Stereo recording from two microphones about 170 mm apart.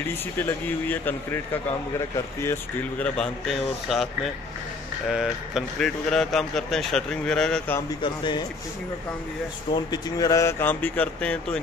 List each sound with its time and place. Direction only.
0.4 s speech: 10° left (ahead or behind)
8.0 s speech: 25° left (ahead or behind)
9.8 s speech: 20° left (ahead or behind); by 11.6 s 5° left (ahead or behind)